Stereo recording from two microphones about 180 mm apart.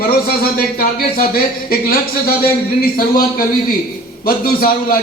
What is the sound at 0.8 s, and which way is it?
Speech, 55° left (ahead or behind).